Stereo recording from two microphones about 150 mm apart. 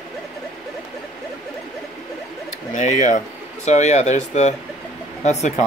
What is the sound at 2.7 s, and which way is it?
Speech, 55° left (ahead or behind).